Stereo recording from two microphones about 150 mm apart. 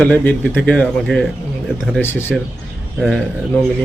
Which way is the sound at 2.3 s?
5° left (ahead or behind).